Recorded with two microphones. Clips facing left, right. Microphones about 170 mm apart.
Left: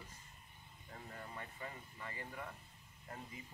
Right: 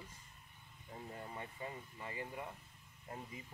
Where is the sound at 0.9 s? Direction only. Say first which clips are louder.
Right 3 dB; 20° right (ahead or behind).